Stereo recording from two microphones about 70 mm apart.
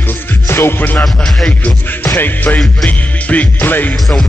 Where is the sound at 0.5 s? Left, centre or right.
Left.